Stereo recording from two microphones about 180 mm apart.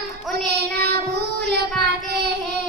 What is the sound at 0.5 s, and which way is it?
Child singing, 65° right (ahead or behind).